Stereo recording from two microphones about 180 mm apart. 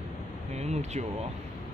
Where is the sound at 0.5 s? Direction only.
40° right (ahead or behind).